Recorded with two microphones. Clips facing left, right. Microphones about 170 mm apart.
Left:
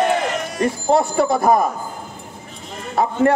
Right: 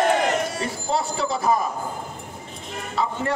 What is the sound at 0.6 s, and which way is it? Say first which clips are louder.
A man's voice: left 8 dB; 50° left (ahead or behind).